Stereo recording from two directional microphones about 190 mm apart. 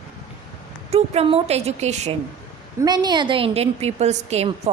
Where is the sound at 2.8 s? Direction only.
20° right (ahead or behind).